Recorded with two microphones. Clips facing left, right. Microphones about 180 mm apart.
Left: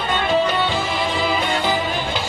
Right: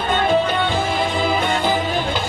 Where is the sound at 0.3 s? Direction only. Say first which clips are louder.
Left 1 dB; 50° right (ahead or behind).